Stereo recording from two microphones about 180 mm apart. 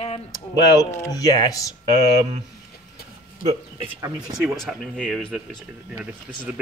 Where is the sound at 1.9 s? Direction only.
40° right (ahead or behind).